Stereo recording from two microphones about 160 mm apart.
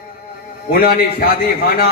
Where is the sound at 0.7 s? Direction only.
70° left (ahead or behind).